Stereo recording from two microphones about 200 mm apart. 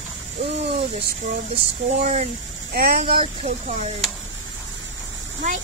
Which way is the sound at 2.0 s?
35° right (ahead or behind).